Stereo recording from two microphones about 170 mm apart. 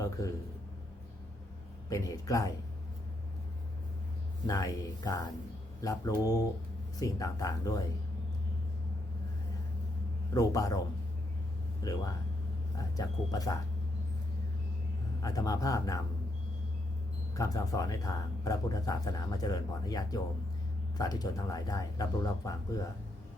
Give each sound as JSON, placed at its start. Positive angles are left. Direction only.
{"t": 1.9, "sound": "speech", "side_deg": 20}
{"t": 4.4, "sound": "speech", "side_deg": 20}
{"t": 10.3, "sound": "speech", "side_deg": 20}
{"t": 15.2, "sound": "speech", "side_deg": 20}
{"t": 17.3, "sound": "speech", "side_deg": 20}